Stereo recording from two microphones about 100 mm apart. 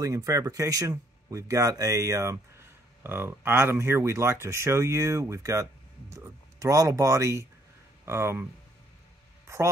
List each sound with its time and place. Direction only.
0.0 s speech: 35° right (ahead or behind)